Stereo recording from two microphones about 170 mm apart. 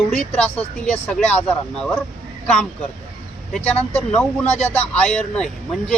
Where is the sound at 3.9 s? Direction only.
5° left (ahead or behind).